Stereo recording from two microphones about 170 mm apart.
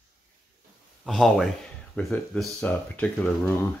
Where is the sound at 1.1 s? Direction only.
Centre (ahead or behind).